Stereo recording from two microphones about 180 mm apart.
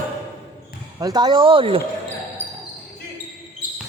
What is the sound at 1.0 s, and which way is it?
Speech, 20° right (ahead or behind).